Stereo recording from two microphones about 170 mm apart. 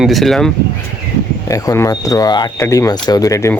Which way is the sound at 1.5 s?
20° left (ahead or behind).